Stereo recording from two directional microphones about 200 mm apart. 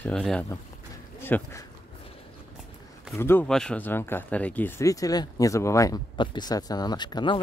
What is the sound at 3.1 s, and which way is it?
Speech, 10° left (ahead or behind).